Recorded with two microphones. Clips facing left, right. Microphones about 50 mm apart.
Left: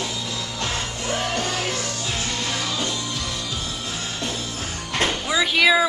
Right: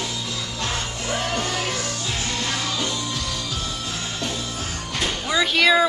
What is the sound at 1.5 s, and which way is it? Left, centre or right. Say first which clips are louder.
Music: even; centre.